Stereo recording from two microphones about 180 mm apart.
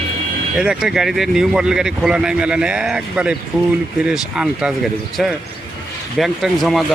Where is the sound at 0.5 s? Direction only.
5° right (ahead or behind).